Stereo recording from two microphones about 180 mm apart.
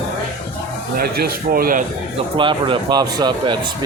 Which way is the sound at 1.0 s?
55° right (ahead or behind).